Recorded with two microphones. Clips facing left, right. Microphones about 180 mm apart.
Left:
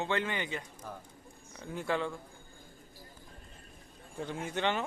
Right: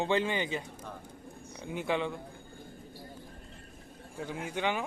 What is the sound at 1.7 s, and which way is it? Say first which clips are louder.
Speech: right 2 dB; 20° right (ahead or behind).